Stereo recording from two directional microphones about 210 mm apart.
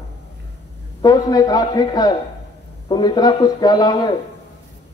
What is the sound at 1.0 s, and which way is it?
A man's voice, 20° left (ahead or behind).